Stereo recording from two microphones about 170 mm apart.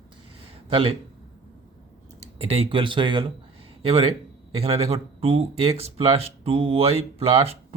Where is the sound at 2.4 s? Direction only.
30° right (ahead or behind).